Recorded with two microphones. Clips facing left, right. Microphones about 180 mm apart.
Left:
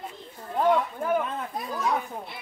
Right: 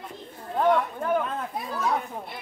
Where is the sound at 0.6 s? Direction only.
5° left (ahead or behind).